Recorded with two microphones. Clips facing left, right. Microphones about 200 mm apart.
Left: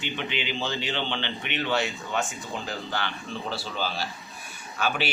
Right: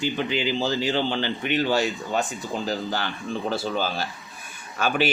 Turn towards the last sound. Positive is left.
turn(degrees=-45)  # may be behind; listen again after turning